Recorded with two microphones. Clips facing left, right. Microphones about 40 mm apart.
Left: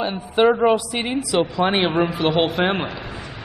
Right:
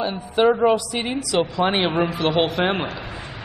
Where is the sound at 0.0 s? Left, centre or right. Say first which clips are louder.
Left 1 dB; centre.